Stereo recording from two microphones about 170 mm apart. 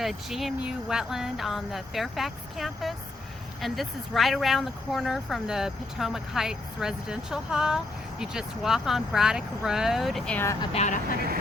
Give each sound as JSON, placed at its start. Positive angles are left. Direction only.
{"t": 0.0, "sound": "speech", "side_deg": 0}
{"t": 10.7, "sound": "speech", "side_deg": 45}